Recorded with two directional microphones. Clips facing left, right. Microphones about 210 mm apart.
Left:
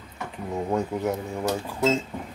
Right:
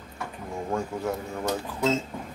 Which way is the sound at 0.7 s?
20° left (ahead or behind).